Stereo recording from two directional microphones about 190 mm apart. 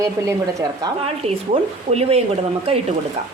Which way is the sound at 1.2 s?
30° right (ahead or behind).